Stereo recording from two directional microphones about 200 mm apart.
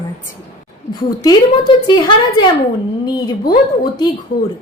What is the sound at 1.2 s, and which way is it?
Speech, 20° left (ahead or behind).